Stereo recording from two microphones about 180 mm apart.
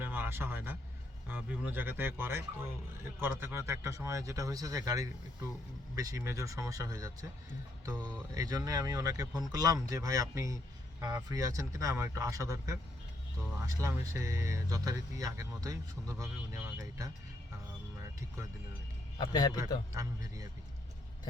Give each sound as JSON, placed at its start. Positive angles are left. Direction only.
{"t": 0.0, "sound": "vehicle", "side_deg": -10}
{"t": 1.3, "sound": "speech", "side_deg": -10}
{"t": 19.2, "sound": "a man's voice", "side_deg": 20}
{"t": 19.9, "sound": "speech", "side_deg": -15}